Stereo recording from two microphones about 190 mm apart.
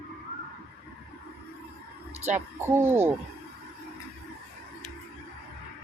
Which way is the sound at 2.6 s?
15° right (ahead or behind).